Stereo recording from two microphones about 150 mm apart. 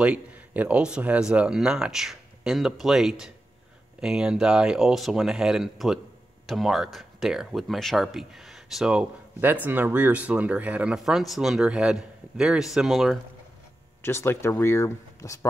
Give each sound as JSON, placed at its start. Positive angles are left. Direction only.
{"t": 0.0, "sound": "speech", "side_deg": -10}
{"t": 14.0, "sound": "speech", "side_deg": 15}